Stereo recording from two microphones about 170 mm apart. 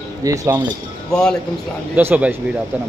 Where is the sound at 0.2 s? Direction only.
20° right (ahead or behind).